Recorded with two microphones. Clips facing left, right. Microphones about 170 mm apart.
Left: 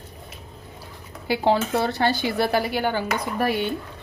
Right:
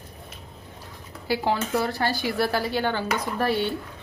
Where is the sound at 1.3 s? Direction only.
25° left (ahead or behind).